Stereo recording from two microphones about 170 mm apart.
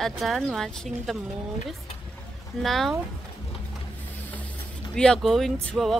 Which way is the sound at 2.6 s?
Centre (ahead or behind).